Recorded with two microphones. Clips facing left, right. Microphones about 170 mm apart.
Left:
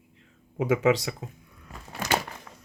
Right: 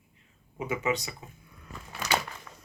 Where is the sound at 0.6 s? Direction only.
90° left.